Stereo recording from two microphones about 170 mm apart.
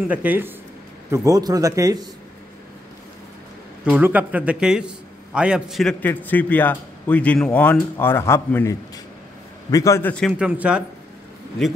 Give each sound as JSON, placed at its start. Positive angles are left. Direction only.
{"t": 0.1, "sound": "a man's voice", "side_deg": -10}
{"t": 1.1, "sound": "a man's voice", "side_deg": -20}
{"t": 3.9, "sound": "a man's voice", "side_deg": -10}
{"t": 10.3, "sound": "a man's voice", "side_deg": -5}